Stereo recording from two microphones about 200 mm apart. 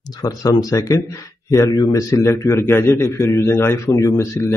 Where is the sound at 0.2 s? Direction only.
20° left (ahead or behind).